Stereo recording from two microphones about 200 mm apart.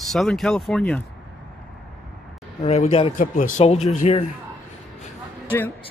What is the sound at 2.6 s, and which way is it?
Speech, 30° left (ahead or behind).